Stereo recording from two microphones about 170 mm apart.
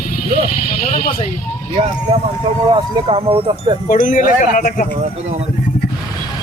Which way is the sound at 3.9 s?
50° left (ahead or behind).